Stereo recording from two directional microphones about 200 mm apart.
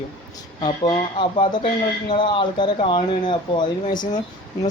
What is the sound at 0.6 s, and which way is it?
Speech, 20° left (ahead or behind).